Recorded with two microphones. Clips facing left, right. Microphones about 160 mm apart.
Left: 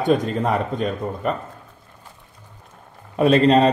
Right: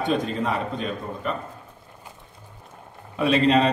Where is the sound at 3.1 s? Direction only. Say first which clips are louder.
Left 4 dB; 45° left (ahead or behind).